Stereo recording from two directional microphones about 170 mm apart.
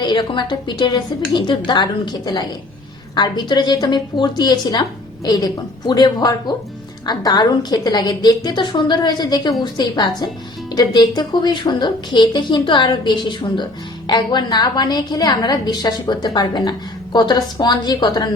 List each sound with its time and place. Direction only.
0.0 s a woman's voice: 25° left (ahead or behind)